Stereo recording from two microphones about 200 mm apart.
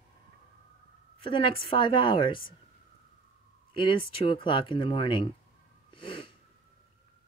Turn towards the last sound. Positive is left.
turn(degrees=25)  # may be behind; listen again after turning